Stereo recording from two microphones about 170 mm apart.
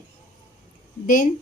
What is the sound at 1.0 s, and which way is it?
Speech, 55° left (ahead or behind).